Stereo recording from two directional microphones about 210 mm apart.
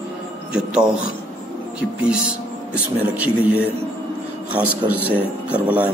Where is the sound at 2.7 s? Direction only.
5° right (ahead or behind).